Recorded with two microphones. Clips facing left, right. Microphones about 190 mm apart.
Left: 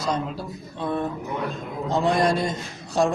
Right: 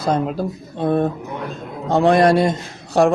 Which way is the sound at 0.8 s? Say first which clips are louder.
Right 8 dB; 55° right (ahead or behind).